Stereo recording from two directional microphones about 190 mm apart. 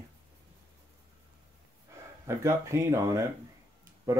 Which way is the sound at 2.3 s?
15° right (ahead or behind).